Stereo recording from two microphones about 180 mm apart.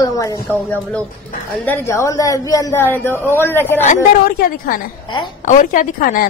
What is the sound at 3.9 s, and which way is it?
A woman's voice, 50° left (ahead or behind).